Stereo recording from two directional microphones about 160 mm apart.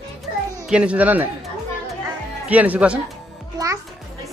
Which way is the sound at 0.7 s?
5° right (ahead or behind).